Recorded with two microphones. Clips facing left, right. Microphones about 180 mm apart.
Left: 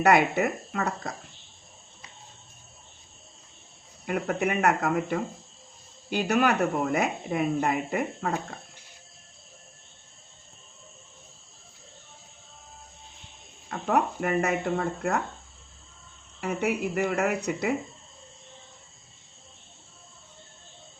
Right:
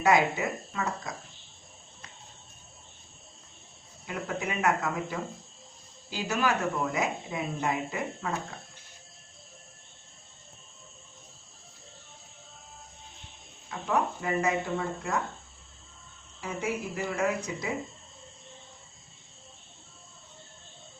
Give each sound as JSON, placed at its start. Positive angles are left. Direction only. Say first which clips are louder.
{"t": 0.0, "sound": "speech", "louder": "left 3 dB", "side_deg": 65}
{"t": 4.0, "sound": "speech", "louder": "left 7 dB", "side_deg": 60}
{"t": 13.7, "sound": "speech", "louder": "left 3 dB", "side_deg": 60}
{"t": 16.4, "sound": "speech", "louder": "left 5 dB", "side_deg": 65}